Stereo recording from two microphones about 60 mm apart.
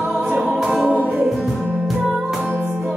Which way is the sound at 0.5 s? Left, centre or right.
Centre.